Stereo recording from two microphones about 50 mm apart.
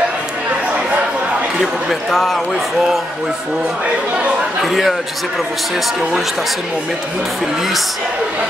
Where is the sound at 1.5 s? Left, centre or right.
Centre.